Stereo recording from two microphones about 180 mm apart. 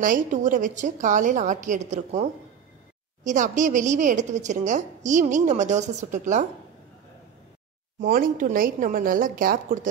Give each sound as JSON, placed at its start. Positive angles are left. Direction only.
{"t": 0.0, "sound": "a woman's voice", "side_deg": -45}
{"t": 3.3, "sound": "a woman's voice", "side_deg": -45}
{"t": 8.0, "sound": "a woman's voice", "side_deg": -50}